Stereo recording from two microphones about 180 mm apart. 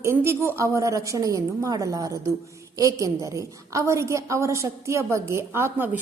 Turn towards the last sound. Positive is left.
turn(degrees=-10)  # may be behind; listen again after turning